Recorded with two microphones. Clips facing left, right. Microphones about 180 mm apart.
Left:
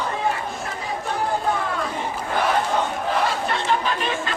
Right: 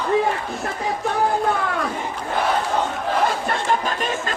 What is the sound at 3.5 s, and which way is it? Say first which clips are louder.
Chatter: right 1 dB; 45° right (ahead or behind).